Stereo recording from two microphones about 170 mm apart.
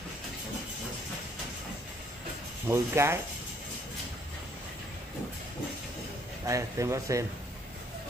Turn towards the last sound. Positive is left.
turn(degrees=-20)  # may be behind; listen again after turning